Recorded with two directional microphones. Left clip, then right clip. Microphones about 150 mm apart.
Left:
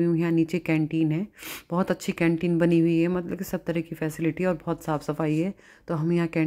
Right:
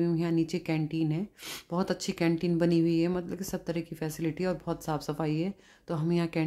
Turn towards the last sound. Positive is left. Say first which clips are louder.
# left 5 dB
turn(degrees=20)  # may be behind; listen again after turning